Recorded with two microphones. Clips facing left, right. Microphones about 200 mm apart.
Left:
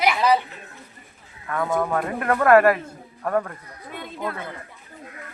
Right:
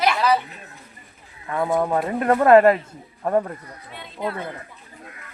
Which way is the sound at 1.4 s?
20° right (ahead or behind).